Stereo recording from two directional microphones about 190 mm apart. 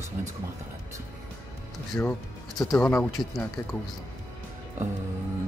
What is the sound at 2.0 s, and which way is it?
Speech, 10° left (ahead or behind).